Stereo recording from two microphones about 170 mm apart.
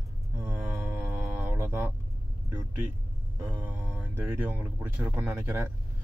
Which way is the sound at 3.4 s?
10° right (ahead or behind).